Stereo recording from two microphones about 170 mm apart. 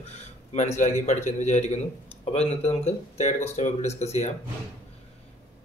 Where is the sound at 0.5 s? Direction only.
45° left (ahead or behind).